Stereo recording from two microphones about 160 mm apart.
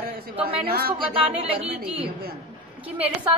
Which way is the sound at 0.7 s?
70° right (ahead or behind).